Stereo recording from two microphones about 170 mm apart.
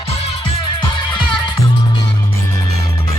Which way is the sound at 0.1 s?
35° left (ahead or behind).